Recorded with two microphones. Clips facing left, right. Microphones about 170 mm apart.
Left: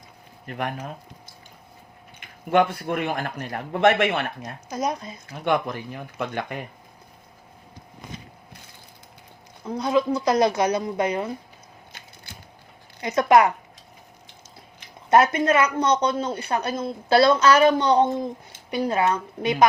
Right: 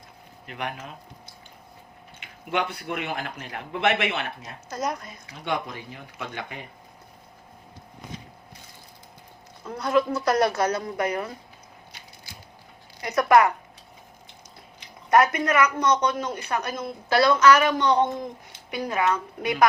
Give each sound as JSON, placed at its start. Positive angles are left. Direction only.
{"t": 0.4, "sound": "speech", "side_deg": 45}
{"t": 2.2, "sound": "speech", "side_deg": 45}
{"t": 4.7, "sound": "a woman's voice", "side_deg": 15}
{"t": 5.3, "sound": "speech", "side_deg": 55}
{"t": 9.6, "sound": "a woman's voice", "side_deg": 15}
{"t": 13.0, "sound": "speech", "side_deg": 20}
{"t": 15.1, "sound": "speech", "side_deg": 25}